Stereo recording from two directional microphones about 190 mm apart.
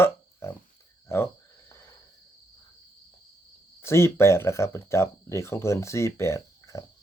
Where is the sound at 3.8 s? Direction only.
15° left (ahead or behind).